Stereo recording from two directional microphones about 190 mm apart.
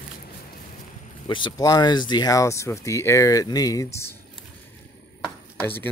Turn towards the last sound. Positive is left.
turn(degrees=10)  # may be behind; listen again after turning